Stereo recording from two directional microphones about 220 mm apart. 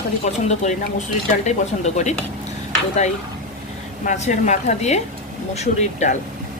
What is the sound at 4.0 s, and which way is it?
Speech, 35° left (ahead or behind).